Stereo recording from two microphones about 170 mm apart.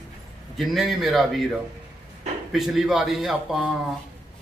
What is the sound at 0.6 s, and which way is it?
Speech, centre (ahead or behind).